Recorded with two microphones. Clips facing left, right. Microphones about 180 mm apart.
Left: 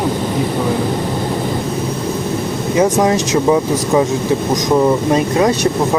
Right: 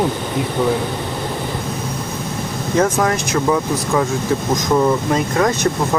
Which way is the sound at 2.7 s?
15° left (ahead or behind).